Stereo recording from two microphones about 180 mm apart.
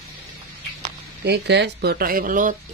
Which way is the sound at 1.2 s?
70° right (ahead or behind).